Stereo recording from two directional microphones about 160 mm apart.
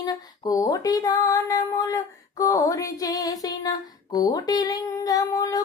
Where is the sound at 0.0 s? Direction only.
20° left (ahead or behind).